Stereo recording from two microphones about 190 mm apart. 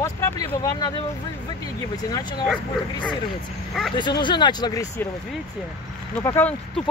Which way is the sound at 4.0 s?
25° left (ahead or behind).